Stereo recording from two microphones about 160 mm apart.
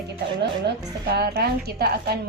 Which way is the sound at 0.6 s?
90° right.